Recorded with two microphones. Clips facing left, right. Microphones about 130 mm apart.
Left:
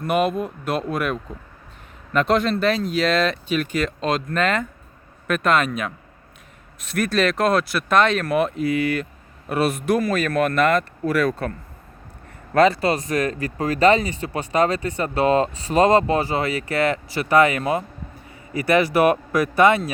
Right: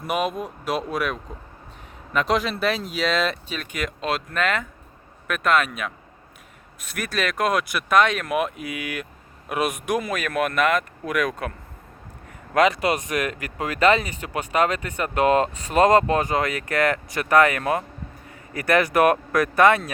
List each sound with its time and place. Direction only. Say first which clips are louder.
0.0 s speech: left 4 dB; centre (ahead or behind)
6.9 s speech: left 6 dB; 10° right (ahead or behind)
12.5 s speech: left 3 dB; 15° right (ahead or behind)
13.7 s speech: left 3 dB; 35° left (ahead or behind)
17.1 s speech: left 1 dB; 50° right (ahead or behind)
17.6 s speech: left 1 dB; 5° left (ahead or behind)